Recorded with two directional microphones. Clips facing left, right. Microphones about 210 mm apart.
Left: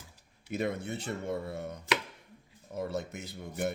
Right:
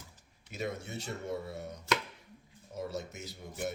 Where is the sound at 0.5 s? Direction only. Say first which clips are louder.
Left 5 dB; 55° left (ahead or behind).